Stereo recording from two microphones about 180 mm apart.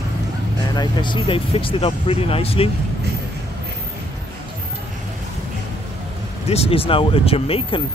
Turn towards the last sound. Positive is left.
turn(degrees=30)  # may be behind; listen again after turning